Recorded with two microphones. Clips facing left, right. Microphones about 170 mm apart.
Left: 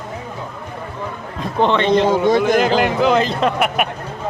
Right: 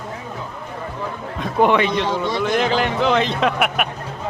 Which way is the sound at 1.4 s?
10° right (ahead or behind).